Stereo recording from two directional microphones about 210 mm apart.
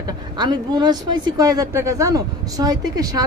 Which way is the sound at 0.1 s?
20° right (ahead or behind).